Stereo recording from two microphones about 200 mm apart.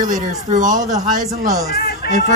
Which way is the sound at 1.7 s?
50° left (ahead or behind).